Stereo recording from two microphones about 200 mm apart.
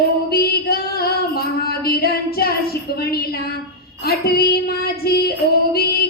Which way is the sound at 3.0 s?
50° left (ahead or behind).